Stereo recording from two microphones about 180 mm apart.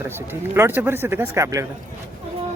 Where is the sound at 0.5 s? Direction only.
10° right (ahead or behind).